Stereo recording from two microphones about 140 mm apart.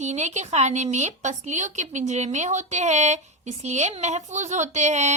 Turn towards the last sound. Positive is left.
turn(degrees=-55)  # may be behind; listen again after turning